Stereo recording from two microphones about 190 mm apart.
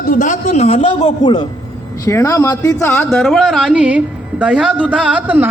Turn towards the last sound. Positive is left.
turn(degrees=-10)  # may be behind; listen again after turning